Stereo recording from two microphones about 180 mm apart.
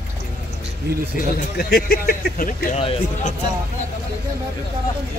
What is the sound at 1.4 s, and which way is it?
Speech, 60° left (ahead or behind).